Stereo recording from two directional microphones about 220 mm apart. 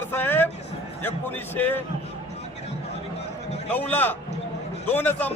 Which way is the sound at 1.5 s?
10° left (ahead or behind).